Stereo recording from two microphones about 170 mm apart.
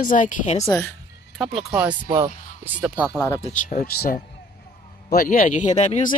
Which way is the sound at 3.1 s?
20° left (ahead or behind).